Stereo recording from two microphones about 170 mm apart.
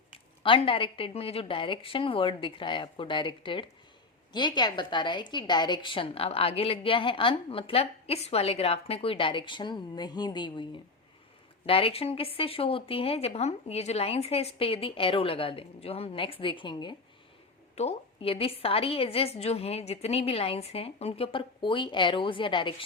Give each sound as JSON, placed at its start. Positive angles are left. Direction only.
{"t": 0.4, "sound": "a woman's voice", "side_deg": 30}